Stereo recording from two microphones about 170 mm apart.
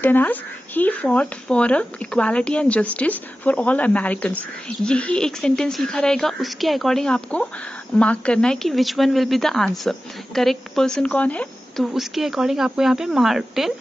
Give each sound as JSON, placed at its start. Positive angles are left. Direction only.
{"t": 0.0, "sound": "speech", "side_deg": 10}